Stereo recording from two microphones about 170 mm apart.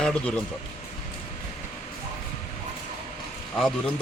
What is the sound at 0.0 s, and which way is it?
Speech, 5° left (ahead or behind).